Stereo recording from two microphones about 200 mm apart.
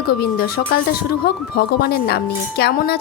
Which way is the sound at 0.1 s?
50° left (ahead or behind).